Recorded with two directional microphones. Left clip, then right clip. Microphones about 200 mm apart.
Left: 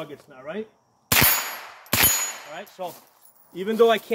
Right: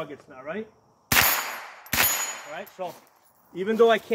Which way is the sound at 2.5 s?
20° left (ahead or behind).